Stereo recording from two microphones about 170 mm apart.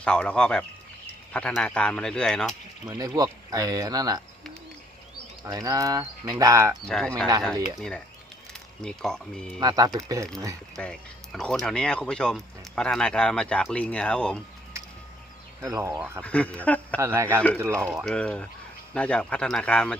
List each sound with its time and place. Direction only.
0.0 s speech: 5° left (ahead or behind)
2.8 s speech: 20° right (ahead or behind)
5.4 s speech: 20° right (ahead or behind)
6.8 s speech: 5° left (ahead or behind)
9.6 s speech: 25° right (ahead or behind)
10.8 s speech: 5° left (ahead or behind)
15.6 s a man's voice: 15° right (ahead or behind)
16.2 s speech: 5° left (ahead or behind)
17.0 s a man's voice: 15° right (ahead or behind)
17.8 s speech: centre (ahead or behind)